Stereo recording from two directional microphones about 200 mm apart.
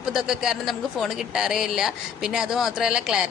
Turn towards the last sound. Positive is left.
turn(degrees=-5)  # may be behind; listen again after turning